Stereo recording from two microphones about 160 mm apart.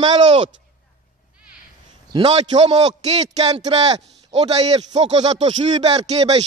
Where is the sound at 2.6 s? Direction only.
45° right (ahead or behind).